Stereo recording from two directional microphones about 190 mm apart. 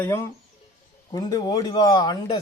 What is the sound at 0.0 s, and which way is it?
A man's voice, 15° left (ahead or behind).